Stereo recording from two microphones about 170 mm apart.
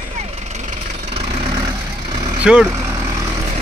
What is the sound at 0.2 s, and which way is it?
Vehicle, 40° right (ahead or behind).